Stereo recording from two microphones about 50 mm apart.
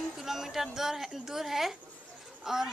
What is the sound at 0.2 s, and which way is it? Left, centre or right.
A woman's voice, centre.